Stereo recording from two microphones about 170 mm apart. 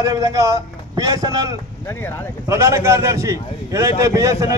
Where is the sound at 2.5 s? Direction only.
15° right (ahead or behind).